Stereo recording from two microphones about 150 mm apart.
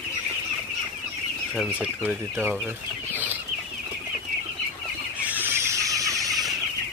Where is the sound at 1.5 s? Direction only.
10° right (ahead or behind).